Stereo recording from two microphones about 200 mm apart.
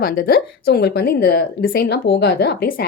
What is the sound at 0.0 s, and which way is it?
A woman's voice, 45° left (ahead or behind).